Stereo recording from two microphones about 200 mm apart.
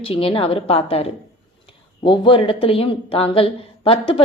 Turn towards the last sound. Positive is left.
turn(degrees=30)  # may be behind; listen again after turning